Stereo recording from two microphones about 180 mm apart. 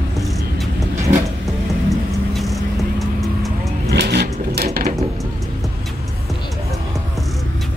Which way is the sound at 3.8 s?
65° right (ahead or behind).